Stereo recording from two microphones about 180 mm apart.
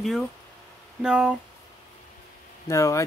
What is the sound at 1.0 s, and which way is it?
Speech, 5° right (ahead or behind).